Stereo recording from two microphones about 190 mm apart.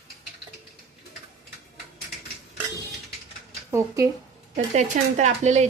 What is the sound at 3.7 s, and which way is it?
Speech, 15° right (ahead or behind).